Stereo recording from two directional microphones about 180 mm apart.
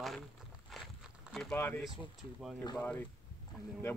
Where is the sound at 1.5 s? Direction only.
10° left (ahead or behind).